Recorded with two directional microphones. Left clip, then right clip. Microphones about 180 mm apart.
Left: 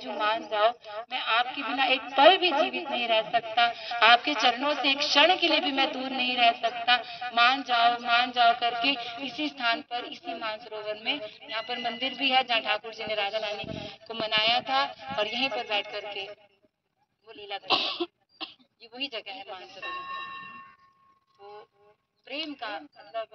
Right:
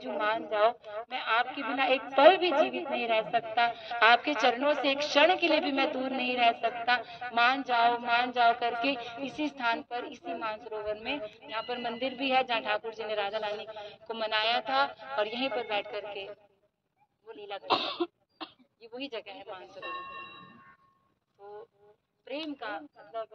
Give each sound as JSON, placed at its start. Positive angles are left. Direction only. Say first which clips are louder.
{"t": 0.0, "sound": "a woman's voice", "louder": "left 2 dB", "side_deg": -40}
{"t": 17.9, "sound": "cough", "louder": "left 1 dB", "side_deg": 0}
{"t": 18.8, "sound": "a woman's voice", "louder": "left 4 dB", "side_deg": -40}
{"t": 22.2, "sound": "a woman's voice", "louder": "left 2 dB", "side_deg": -40}